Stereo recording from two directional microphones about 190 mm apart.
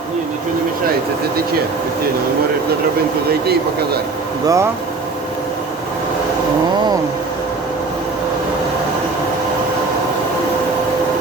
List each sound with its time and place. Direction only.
3.4 s speech: 55° right (ahead or behind)
4.4 s speech: 15° right (ahead or behind)